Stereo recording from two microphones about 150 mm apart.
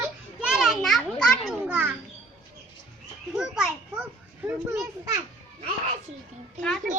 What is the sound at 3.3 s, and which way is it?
A child's voice, 5° right (ahead or behind).